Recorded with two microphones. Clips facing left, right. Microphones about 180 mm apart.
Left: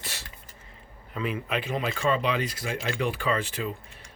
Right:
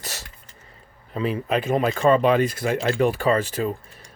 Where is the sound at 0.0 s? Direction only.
40° right (ahead or behind).